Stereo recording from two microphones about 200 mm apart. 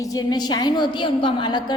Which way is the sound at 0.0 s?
20° left (ahead or behind).